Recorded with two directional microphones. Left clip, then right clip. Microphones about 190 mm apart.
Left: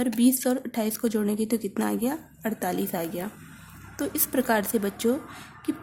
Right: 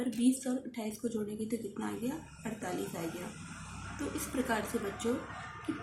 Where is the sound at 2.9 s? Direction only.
55° left (ahead or behind).